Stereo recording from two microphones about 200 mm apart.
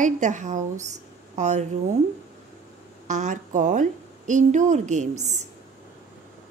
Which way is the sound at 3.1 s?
40° right (ahead or behind).